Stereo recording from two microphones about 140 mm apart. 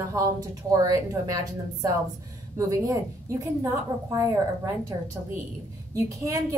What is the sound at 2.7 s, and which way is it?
Speech, 20° right (ahead or behind).